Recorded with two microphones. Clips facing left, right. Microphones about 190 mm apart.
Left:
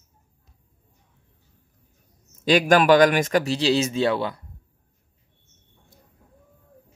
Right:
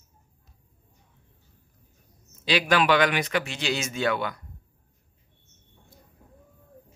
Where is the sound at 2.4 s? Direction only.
45° left (ahead or behind); by 4.4 s 30° left (ahead or behind).